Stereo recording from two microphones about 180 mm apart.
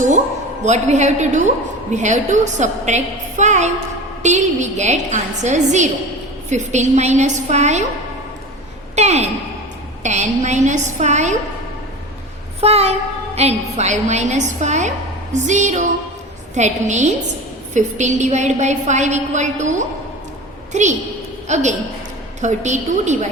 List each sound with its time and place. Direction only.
0.6 s a woman's voice: 40° right (ahead or behind)
9.0 s a woman's voice: 40° right (ahead or behind)
12.5 s a woman's voice: 35° right (ahead or behind)